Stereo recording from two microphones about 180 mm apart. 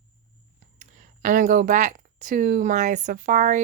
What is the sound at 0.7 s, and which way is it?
Speech, 45° right (ahead or behind).